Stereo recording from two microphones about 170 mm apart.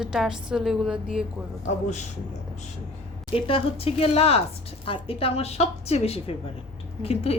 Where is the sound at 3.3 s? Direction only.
30° left (ahead or behind).